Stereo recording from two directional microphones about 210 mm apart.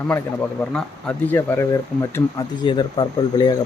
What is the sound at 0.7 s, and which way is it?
Speech, 5° left (ahead or behind).